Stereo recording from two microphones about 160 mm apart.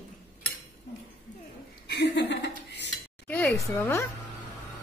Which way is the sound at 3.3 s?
10° left (ahead or behind).